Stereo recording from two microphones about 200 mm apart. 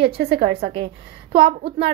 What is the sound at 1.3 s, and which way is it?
Speech, 30° right (ahead or behind).